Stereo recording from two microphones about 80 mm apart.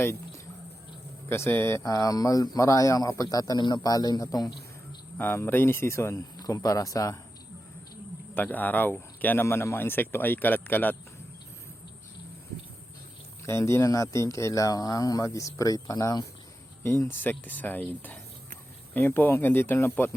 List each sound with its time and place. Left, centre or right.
0.0 s a sound: left
1.3 s speech: left
5.1 s speech: left
8.4 s speech: left
13.4 s speech: left
16.8 s speech: left
17.2 s speech: left